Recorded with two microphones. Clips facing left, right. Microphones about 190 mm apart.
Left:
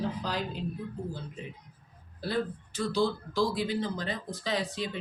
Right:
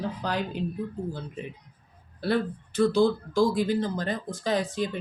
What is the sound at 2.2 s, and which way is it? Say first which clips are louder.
Speech: right 5 dB; 60° right (ahead or behind).